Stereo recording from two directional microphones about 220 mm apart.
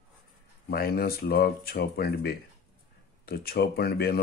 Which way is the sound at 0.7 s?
45° left (ahead or behind).